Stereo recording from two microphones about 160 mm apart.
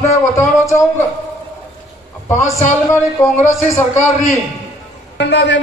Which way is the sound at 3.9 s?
45° left (ahead or behind).